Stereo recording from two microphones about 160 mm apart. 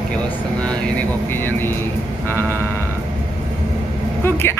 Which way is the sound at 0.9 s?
15° left (ahead or behind).